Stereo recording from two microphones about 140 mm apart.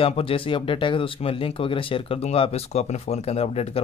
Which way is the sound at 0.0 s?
40° left (ahead or behind).